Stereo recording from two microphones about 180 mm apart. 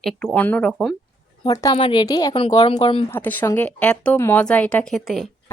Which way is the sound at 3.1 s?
10° left (ahead or behind).